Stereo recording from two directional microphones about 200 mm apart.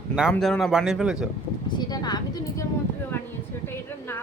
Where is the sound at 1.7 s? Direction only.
20° left (ahead or behind).